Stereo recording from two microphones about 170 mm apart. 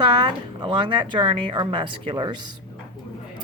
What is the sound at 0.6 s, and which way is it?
Speech, 30° right (ahead or behind).